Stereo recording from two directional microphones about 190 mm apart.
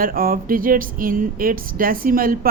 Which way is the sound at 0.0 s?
50° right (ahead or behind).